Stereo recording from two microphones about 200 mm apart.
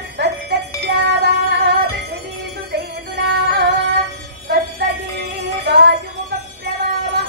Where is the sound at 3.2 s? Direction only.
60° right (ahead or behind).